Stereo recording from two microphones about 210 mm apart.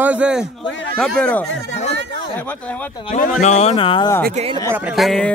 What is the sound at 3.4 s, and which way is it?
Speech, 35° left (ahead or behind).